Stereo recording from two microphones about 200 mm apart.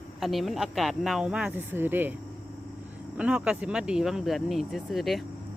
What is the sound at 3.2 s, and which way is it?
Speech, 5° right (ahead or behind).